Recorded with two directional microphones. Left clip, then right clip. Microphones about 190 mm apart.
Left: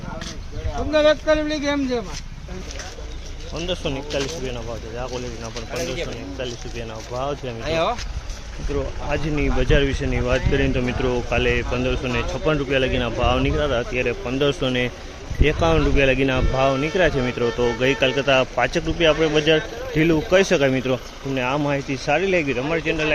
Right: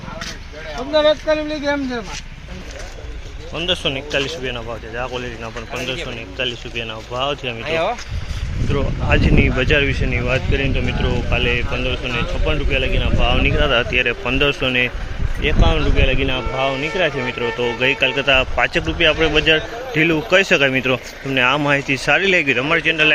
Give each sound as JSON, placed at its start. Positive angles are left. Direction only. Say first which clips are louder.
{"t": 0.9, "sound": "speech", "louder": "right 2 dB", "side_deg": 15}
{"t": 3.5, "sound": "speech", "louder": "right 6 dB", "side_deg": 0}
{"t": 6.3, "sound": "speech", "louder": "right 7 dB", "side_deg": 0}
{"t": 7.6, "sound": "speech", "louder": "right 1 dB", "side_deg": 65}
{"t": 8.7, "sound": "speech", "louder": "right 5 dB", "side_deg": 0}
{"t": 13.6, "sound": "speech", "louder": "right 5 dB", "side_deg": 10}
{"t": 13.9, "sound": "speech", "louder": "right 5 dB", "side_deg": 0}
{"t": 14.3, "sound": "speech", "louder": "right 4 dB", "side_deg": 15}